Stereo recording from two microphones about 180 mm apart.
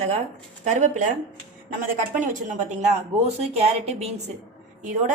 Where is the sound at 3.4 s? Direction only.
35° right (ahead or behind).